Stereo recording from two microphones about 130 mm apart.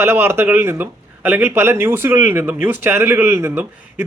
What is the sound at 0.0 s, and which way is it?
A man's voice, 15° right (ahead or behind).